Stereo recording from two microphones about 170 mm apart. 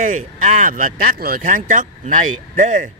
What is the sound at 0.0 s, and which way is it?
Speech, 45° right (ahead or behind).